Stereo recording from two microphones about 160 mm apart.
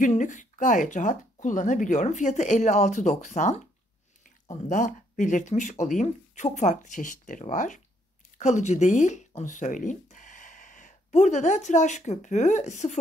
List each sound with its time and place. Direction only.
0.0 s speech: 50° left (ahead or behind)